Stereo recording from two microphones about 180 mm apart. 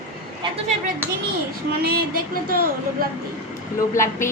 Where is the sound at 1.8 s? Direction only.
55° right (ahead or behind).